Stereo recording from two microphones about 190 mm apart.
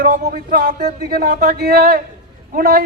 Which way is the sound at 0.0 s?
50° right (ahead or behind).